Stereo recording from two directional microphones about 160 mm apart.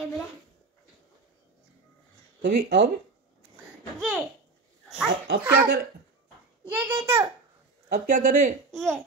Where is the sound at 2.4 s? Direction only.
90° right.